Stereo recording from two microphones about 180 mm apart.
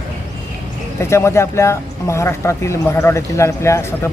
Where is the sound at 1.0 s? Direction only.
15° left (ahead or behind).